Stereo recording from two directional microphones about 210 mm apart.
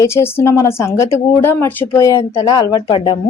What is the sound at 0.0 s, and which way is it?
A woman's voice, 10° left (ahead or behind).